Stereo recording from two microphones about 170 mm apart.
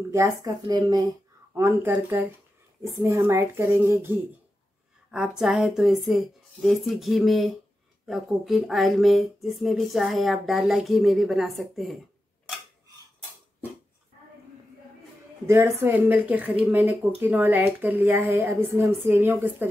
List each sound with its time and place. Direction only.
0.1 s a woman's voice: 20° right (ahead or behind)
1.5 s speech: 10° right (ahead or behind)
5.1 s speech: 5° right (ahead or behind)
15.4 s speech: 15° right (ahead or behind)